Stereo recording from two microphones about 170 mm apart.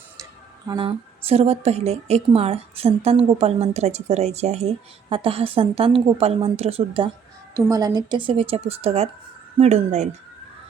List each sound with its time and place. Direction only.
0.7 s a woman's voice: 30° right (ahead or behind)
7.5 s a woman's voice: 20° right (ahead or behind); by 10.1 s 40° right (ahead or behind)